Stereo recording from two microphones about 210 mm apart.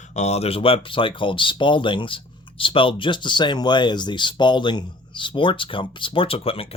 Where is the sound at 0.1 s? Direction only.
35° left (ahead or behind).